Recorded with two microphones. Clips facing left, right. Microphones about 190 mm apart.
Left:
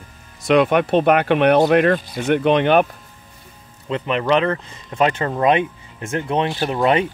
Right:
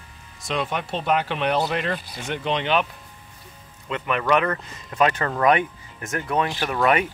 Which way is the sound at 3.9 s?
25° left (ahead or behind).